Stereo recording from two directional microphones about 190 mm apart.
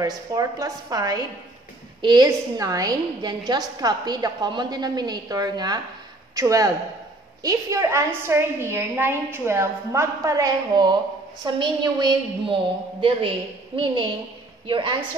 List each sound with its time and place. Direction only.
0.0 s a woman's voice: 20° right (ahead or behind)
14.7 s a woman's voice: 25° right (ahead or behind)